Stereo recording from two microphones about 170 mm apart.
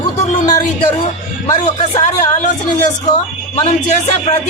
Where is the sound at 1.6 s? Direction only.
40° left (ahead or behind).